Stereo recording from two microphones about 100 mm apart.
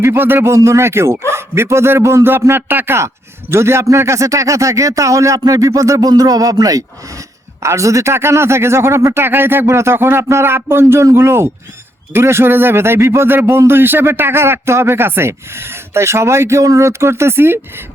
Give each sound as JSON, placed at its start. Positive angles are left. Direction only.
{"t": 0.0, "sound": "speech", "side_deg": -25}